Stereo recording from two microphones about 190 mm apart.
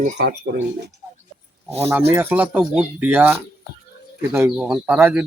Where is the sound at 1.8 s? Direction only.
10° right (ahead or behind).